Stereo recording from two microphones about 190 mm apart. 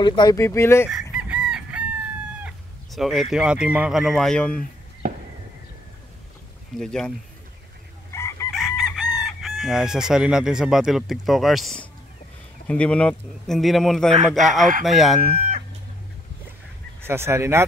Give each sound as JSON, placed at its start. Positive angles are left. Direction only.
{"t": 0.0, "sound": "speech", "side_deg": 25}
{"t": 1.1, "sound": "chicken", "side_deg": -5}
{"t": 2.4, "sound": "speech", "side_deg": 0}
{"t": 5.0, "sound": "a sound", "side_deg": -45}
{"t": 6.7, "sound": "chicken", "side_deg": 0}
{"t": 8.1, "sound": "chicken", "side_deg": 15}
{"t": 8.5, "sound": "chicken", "side_deg": 0}
{"t": 15.3, "sound": "chicken", "side_deg": -45}
{"t": 17.0, "sound": "speech", "side_deg": -15}